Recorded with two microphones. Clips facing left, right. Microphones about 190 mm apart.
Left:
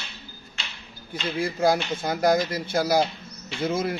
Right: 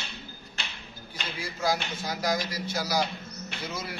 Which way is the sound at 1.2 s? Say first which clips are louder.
Left 8 dB; 55° left (ahead or behind).